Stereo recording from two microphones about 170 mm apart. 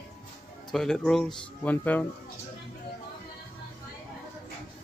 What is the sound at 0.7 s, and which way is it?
Speech, 5° left (ahead or behind).